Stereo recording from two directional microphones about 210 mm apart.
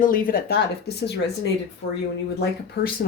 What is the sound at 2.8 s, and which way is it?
Speech, 45° left (ahead or behind).